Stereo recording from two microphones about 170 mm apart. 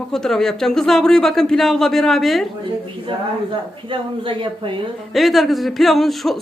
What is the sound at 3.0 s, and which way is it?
Speech, 30° right (ahead or behind).